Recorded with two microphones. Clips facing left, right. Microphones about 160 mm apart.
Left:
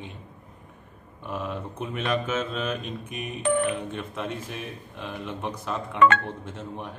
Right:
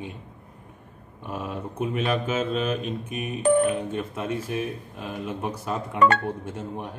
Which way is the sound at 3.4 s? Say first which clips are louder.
Right 5 dB; 35° right (ahead or behind).